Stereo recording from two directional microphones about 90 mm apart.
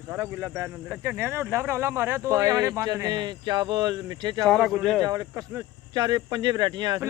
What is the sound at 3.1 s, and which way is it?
Speech, 55° right (ahead or behind).